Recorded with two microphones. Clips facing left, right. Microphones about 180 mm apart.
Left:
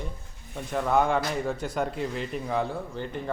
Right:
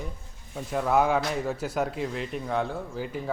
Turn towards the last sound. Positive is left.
turn(degrees=-5)  # may be behind; listen again after turning